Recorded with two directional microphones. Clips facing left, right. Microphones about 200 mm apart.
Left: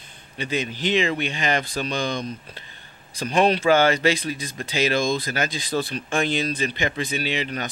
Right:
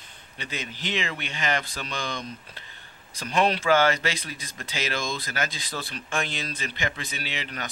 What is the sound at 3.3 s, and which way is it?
Speech, 15° left (ahead or behind).